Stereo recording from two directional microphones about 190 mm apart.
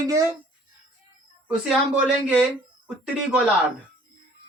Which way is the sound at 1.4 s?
5° right (ahead or behind).